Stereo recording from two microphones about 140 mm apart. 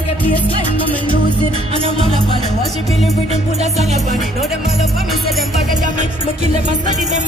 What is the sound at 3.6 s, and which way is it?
Music, 50° right (ahead or behind).